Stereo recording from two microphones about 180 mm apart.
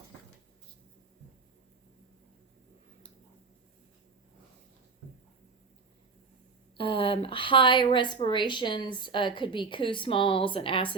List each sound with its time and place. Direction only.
6.7 s a woman's voice: 30° left (ahead or behind)